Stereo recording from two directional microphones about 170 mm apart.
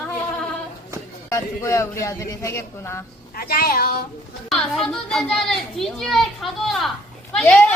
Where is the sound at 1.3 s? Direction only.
20° left (ahead or behind).